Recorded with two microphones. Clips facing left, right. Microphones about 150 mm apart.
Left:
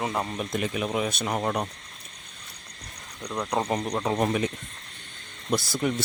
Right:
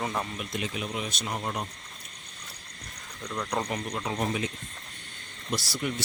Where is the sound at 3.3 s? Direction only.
25° left (ahead or behind); by 4.4 s 50° left (ahead or behind).